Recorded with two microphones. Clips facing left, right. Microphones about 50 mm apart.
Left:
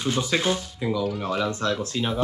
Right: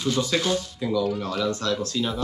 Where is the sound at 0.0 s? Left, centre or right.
Left.